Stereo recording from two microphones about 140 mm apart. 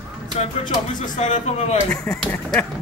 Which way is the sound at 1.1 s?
60° left (ahead or behind).